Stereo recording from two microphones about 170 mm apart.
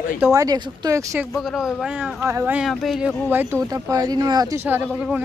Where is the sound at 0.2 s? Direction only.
20° right (ahead or behind).